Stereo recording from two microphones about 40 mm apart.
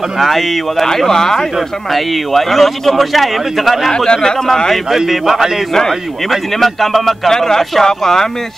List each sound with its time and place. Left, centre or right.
0.2 s speech: centre
3.9 s speech: centre
4.8 s speech: centre
5.7 s speech: centre
7.2 s speech: centre